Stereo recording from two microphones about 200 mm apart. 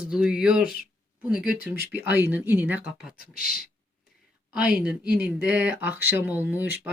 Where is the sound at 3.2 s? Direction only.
45° left (ahead or behind).